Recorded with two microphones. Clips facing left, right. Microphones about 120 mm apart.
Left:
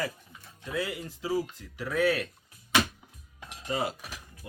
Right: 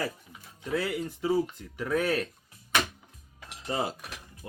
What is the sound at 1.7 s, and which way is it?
Speech, 45° right (ahead or behind).